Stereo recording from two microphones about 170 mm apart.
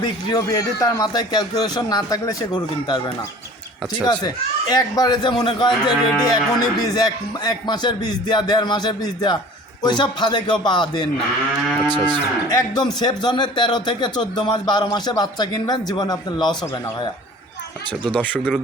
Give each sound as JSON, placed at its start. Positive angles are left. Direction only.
{"t": 0.0, "sound": "speech", "side_deg": 25}
{"t": 4.7, "sound": "speech", "side_deg": 25}
{"t": 12.5, "sound": "speech", "side_deg": 25}
{"t": 18.3, "sound": "speech", "side_deg": 0}